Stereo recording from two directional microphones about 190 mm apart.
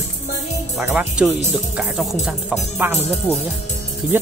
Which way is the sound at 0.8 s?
10° right (ahead or behind).